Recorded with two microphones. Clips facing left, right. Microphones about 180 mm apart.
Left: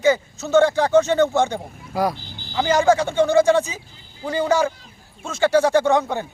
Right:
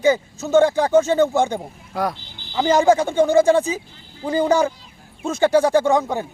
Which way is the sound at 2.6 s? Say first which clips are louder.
Right 2 dB; 15° right (ahead or behind).